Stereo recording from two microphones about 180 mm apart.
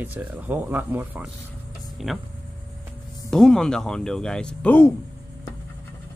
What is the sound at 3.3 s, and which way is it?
Speech, 5° left (ahead or behind).